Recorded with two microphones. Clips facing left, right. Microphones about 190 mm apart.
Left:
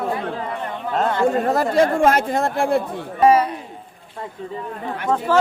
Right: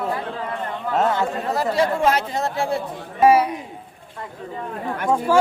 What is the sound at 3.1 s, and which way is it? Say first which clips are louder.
Speech: even; 10° right (ahead or behind).